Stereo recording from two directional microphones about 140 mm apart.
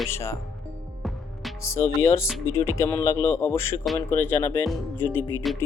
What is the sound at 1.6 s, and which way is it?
Speech, 20° left (ahead or behind).